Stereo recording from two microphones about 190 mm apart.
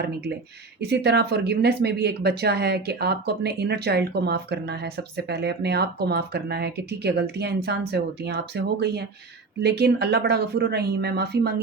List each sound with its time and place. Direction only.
0.8 s speech: 60° right (ahead or behind)